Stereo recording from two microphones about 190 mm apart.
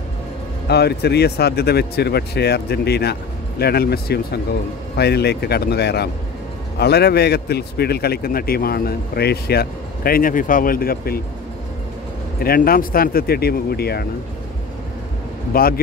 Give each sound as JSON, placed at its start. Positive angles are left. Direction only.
{"t": 0.7, "sound": "a man's voice", "side_deg": 60}
{"t": 12.4, "sound": "a man's voice", "side_deg": 50}
{"t": 15.5, "sound": "a man's voice", "side_deg": 50}